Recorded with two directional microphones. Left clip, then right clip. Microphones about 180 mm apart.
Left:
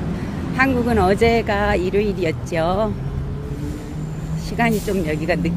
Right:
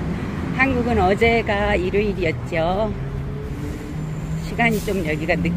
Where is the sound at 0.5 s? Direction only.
15° left (ahead or behind).